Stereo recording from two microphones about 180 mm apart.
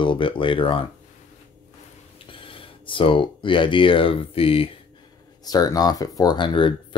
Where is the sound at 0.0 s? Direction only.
25° left (ahead or behind).